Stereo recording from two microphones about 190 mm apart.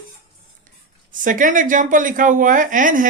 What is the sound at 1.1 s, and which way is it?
Speech, 45° right (ahead or behind).